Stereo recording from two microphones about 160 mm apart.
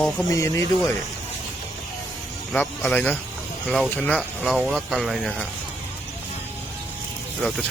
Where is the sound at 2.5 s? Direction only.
5° left (ahead or behind).